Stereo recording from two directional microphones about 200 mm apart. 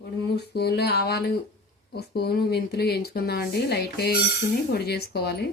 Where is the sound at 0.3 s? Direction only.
55° left (ahead or behind).